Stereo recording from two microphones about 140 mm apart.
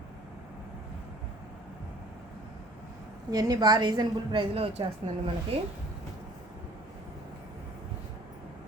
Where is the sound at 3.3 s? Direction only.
25° right (ahead or behind).